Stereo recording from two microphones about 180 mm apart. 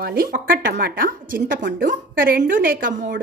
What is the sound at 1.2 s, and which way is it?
A woman's voice, 50° right (ahead or behind).